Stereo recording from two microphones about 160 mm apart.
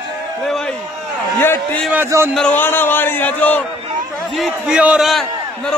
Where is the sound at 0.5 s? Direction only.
5° left (ahead or behind).